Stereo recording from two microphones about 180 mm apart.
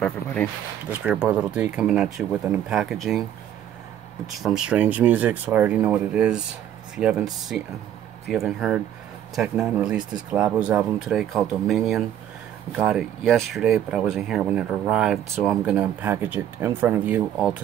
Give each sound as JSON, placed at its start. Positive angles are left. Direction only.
{"t": 0.0, "sound": "speech", "side_deg": 5}
{"t": 0.8, "sound": "speech", "side_deg": -5}
{"t": 4.3, "sound": "speech", "side_deg": 0}